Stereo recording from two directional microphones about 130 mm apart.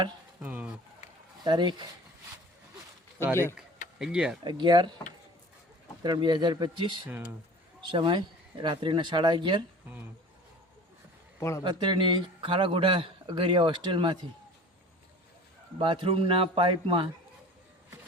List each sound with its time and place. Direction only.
0.4 s speech: 10° right (ahead or behind)
1.5 s a man's voice: 35° right (ahead or behind)
3.9 s speech: 5° right (ahead or behind)
4.4 s a man's voice: 35° right (ahead or behind)
6.0 s a man's voice: 35° right (ahead or behind)
11.3 s a man's voice: 20° left (ahead or behind)
11.6 s a man's voice: 35° right (ahead or behind)
15.8 s a man's voice: 40° right (ahead or behind)